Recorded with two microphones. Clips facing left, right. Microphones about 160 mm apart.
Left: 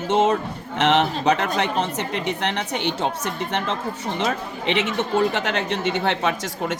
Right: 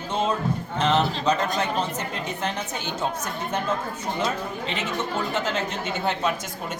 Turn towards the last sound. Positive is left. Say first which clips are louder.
# left 5 dB
turn(degrees=90)